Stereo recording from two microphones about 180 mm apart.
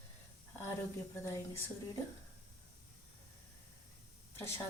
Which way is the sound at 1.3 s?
15° left (ahead or behind).